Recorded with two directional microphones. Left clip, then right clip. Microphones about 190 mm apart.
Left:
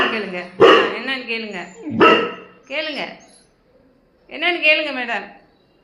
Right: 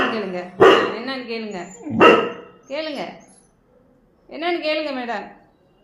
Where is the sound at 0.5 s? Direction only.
25° right (ahead or behind).